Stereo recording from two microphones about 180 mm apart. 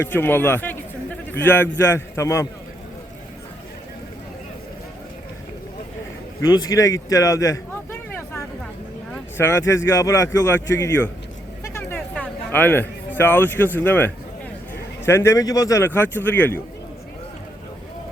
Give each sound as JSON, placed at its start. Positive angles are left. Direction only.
{"t": 0.0, "sound": "speech", "side_deg": 10}
{"t": 6.4, "sound": "speech", "side_deg": 20}
{"t": 11.8, "sound": "a sound", "side_deg": 10}
{"t": 15.0, "sound": "speech", "side_deg": 15}